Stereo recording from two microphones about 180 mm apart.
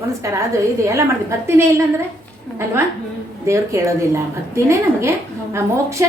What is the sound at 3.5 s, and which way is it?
A woman's voice, 15° right (ahead or behind).